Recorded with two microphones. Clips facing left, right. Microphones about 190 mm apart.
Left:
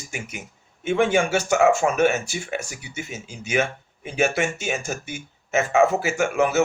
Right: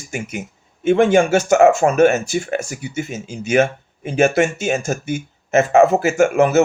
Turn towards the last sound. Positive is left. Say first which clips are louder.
# right 7 dB
turn(degrees=-45)  # may be behind; listen again after turning